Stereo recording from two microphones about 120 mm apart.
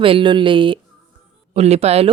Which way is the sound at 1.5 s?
60° right (ahead or behind).